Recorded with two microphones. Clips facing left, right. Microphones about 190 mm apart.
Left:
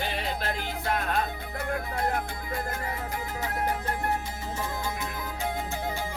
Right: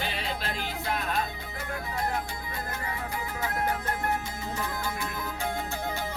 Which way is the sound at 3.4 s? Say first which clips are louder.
Even; 35° left (ahead or behind).